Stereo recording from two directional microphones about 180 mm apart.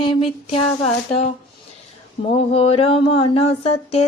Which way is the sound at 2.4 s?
35° left (ahead or behind).